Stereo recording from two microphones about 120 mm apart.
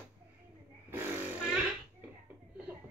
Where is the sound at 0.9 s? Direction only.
20° right (ahead or behind).